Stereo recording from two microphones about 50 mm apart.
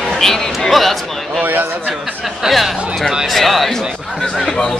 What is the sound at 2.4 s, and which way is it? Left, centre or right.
A man's voice, centre.